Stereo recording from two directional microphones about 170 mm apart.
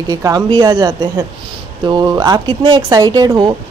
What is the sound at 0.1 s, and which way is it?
Speech, 20° right (ahead or behind).